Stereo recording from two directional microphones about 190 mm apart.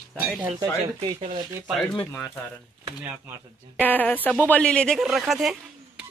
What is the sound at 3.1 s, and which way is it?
Speech, 10° right (ahead or behind).